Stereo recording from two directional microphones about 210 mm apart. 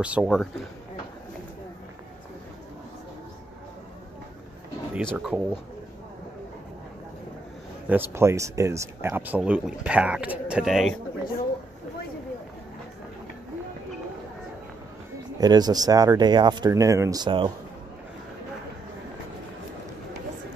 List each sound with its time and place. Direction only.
0.0 s speech: 5° right (ahead or behind)
4.9 s speech: 5° right (ahead or behind)
7.9 s speech: 10° right (ahead or behind)
15.3 s speech: 20° right (ahead or behind)